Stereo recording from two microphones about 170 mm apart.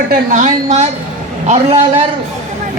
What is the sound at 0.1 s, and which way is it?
A woman's voice, 50° right (ahead or behind).